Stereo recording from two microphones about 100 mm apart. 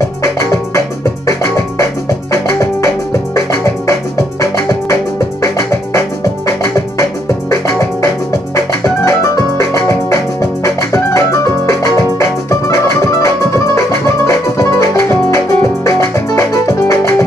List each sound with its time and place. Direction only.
0.2 s music: 30° left (ahead or behind)
2.3 s music: 30° left (ahead or behind)
8.0 s music: 30° left (ahead or behind)